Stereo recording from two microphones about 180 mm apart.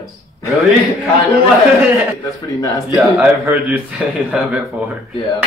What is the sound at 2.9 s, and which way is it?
Speech, centre (ahead or behind).